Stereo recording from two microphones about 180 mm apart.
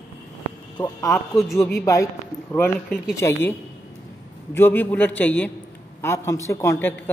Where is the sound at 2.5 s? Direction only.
10° left (ahead or behind).